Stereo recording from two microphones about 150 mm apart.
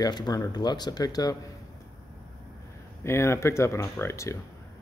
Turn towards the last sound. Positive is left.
turn(degrees=20)  # may be behind; listen again after turning